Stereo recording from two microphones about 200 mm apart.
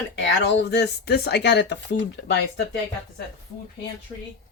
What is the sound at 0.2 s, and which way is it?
Speech, 60° left (ahead or behind).